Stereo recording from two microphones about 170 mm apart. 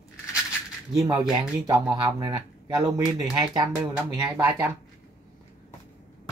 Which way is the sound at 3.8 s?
5° right (ahead or behind).